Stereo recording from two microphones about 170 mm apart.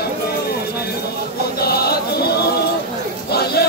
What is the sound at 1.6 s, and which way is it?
Chant, 65° left (ahead or behind).